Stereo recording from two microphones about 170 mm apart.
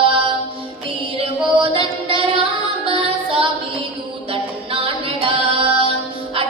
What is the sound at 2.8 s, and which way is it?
Music, 35° right (ahead or behind).